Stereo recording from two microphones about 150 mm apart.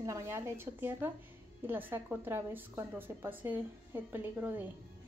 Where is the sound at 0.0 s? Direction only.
20° right (ahead or behind).